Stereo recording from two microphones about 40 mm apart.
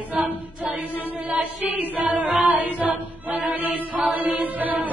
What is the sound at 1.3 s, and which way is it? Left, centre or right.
Chant, right.